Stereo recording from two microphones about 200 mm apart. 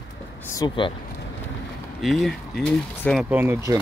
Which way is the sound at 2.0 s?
Centre (ahead or behind).